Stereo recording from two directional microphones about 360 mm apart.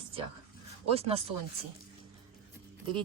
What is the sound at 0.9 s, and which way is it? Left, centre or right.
Speech, centre.